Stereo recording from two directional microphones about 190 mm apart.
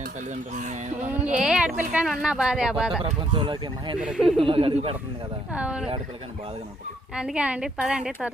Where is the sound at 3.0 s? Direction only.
25° right (ahead or behind).